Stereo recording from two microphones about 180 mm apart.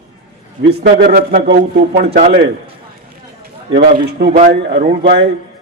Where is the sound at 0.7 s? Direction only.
55° right (ahead or behind).